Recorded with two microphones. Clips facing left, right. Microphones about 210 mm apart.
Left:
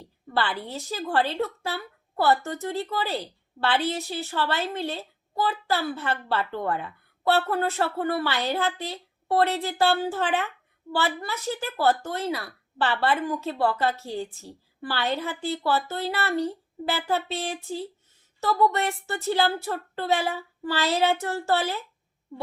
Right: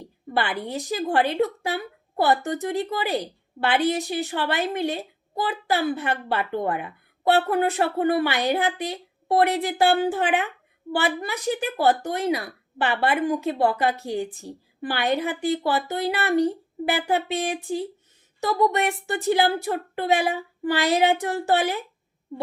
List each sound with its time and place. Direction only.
0.0 s a woman's voice: 15° right (ahead or behind)